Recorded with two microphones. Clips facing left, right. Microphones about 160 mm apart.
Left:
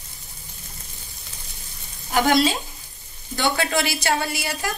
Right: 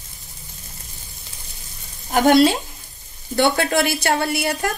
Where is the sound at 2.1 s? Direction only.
60° right (ahead or behind).